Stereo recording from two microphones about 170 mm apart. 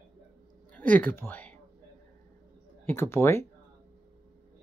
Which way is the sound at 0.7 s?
10° left (ahead or behind).